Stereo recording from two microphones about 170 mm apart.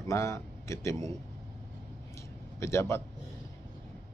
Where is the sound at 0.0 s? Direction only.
15° left (ahead or behind).